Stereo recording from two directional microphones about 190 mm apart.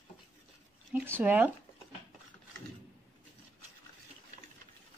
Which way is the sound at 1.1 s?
10° right (ahead or behind).